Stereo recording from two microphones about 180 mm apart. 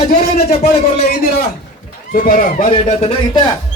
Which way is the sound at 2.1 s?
50° left (ahead or behind).